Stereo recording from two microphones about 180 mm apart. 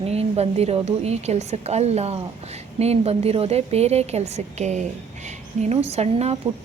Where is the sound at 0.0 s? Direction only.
35° right (ahead or behind).